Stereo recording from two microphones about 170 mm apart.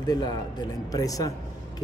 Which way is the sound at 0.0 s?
25° left (ahead or behind).